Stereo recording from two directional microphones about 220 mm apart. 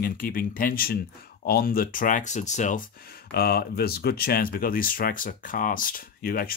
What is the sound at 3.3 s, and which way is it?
Speech, 45° left (ahead or behind).